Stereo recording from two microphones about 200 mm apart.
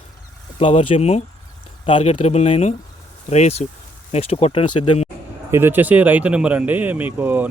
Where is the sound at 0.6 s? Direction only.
25° left (ahead or behind).